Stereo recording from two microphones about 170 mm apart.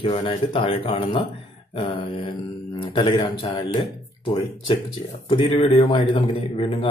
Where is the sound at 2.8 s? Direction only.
30° left (ahead or behind).